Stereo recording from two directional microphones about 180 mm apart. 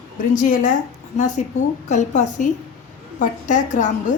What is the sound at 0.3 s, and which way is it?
A woman's voice, 45° left (ahead or behind).